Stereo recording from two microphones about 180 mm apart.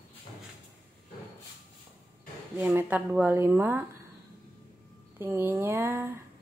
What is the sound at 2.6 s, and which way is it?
Speech, 10° right (ahead or behind).